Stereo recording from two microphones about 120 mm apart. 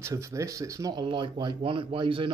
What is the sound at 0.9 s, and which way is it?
Speech, 45° right (ahead or behind).